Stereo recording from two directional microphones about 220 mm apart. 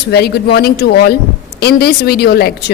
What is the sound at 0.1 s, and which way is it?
A woman's voice, 50° left (ahead or behind).